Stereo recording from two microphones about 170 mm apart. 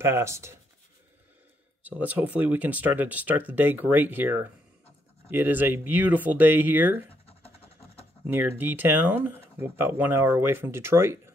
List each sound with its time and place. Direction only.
0.0 s speech: 15° right (ahead or behind)
1.8 s speech: 10° right (ahead or behind)
7.2 s vehicle: 35° left (ahead or behind)
8.3 s speech: 10° right (ahead or behind)